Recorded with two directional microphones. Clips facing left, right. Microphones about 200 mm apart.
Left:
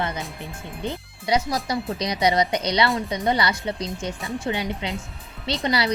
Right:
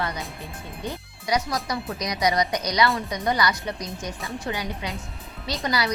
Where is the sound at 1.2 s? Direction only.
25° left (ahead or behind).